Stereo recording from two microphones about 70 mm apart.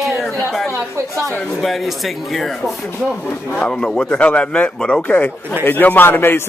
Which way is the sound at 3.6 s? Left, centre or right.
Centre.